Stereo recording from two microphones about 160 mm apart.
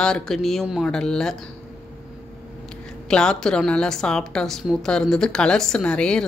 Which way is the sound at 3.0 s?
5° left (ahead or behind).